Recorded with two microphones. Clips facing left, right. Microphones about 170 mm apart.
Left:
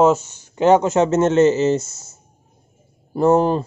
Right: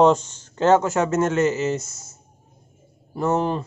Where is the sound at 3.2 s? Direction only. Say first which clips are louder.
Left 7 dB; 30° left (ahead or behind).